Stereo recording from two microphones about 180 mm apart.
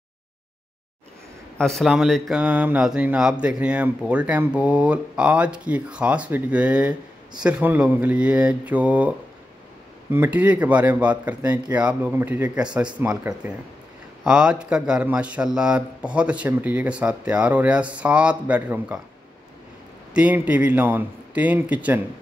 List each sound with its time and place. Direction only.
1.6 s speech: centre (ahead or behind)
10.1 s speech: 10° right (ahead or behind)
20.2 s speech: 5° right (ahead or behind)